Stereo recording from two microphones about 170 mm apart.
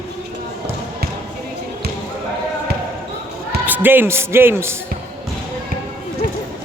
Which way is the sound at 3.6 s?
10° right (ahead or behind).